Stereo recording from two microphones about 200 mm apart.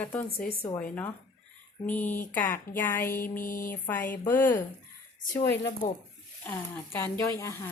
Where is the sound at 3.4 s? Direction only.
40° left (ahead or behind).